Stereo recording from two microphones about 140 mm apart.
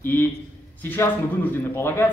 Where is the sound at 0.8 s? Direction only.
15° left (ahead or behind).